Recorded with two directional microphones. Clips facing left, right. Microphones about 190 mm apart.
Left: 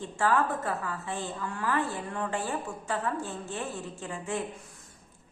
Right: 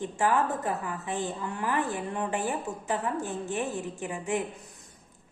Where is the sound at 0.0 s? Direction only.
20° right (ahead or behind).